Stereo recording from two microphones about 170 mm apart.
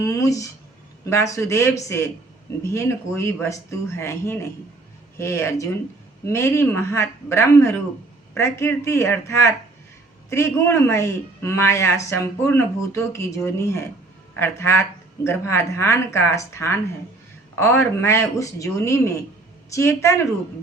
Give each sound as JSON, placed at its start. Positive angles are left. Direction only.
{"t": 0.0, "sound": "speech", "side_deg": 20}